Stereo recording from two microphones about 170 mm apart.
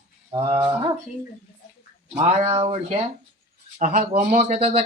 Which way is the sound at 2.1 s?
35° right (ahead or behind).